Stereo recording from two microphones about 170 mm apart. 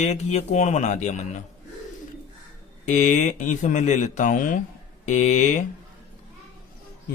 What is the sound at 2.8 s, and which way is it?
Speech, 45° left (ahead or behind).